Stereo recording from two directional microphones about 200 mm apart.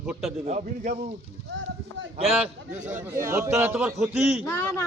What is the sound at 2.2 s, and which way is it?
Speech, 30° right (ahead or behind).